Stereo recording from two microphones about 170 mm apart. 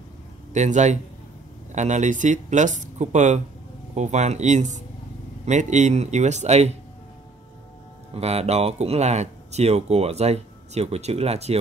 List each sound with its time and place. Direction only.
0.5 s speech: 45° right (ahead or behind)
8.1 s speech: 40° right (ahead or behind)